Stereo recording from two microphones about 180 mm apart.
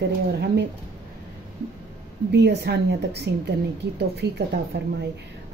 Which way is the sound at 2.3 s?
70° right (ahead or behind).